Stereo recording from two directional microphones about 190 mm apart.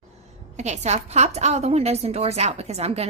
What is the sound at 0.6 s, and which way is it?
A woman's voice, 35° right (ahead or behind).